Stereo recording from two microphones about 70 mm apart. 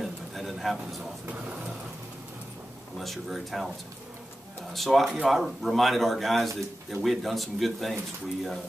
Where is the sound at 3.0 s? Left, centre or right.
Centre.